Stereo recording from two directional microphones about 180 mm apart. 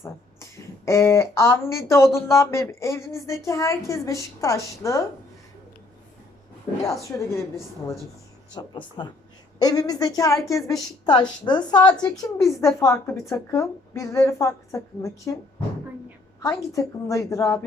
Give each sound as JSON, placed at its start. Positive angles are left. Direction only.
{"t": 0.9, "sound": "a woman's voice", "side_deg": 15}
{"t": 6.8, "sound": "a woman's voice", "side_deg": 15}
{"t": 16.4, "sound": "a woman's voice", "side_deg": 15}